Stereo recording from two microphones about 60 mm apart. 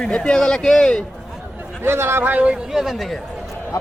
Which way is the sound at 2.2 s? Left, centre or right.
Right.